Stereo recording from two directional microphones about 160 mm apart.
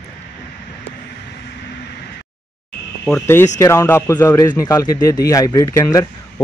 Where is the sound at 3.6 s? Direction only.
20° left (ahead or behind).